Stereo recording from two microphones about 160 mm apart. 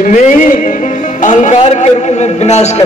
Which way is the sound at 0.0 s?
55° left (ahead or behind).